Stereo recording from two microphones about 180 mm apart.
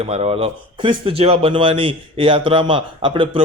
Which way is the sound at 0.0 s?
35° right (ahead or behind).